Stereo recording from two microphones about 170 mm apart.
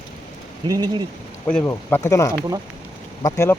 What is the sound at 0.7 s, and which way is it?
Speech, 25° right (ahead or behind).